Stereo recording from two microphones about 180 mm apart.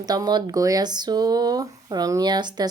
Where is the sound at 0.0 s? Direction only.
20° right (ahead or behind).